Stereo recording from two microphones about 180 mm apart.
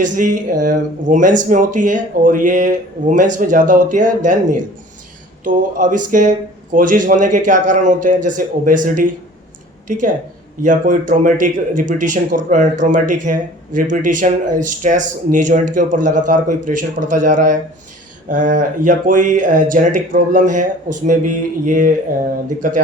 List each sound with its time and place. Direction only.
0.0 s speech: 45° right (ahead or behind)